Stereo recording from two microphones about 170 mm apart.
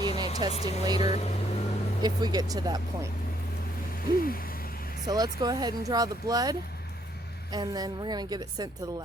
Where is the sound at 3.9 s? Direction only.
60° left (ahead or behind).